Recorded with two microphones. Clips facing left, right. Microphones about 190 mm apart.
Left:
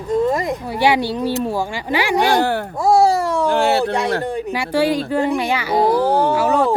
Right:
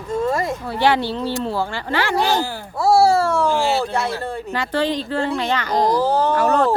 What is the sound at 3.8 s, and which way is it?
Speech, 15° left (ahead or behind).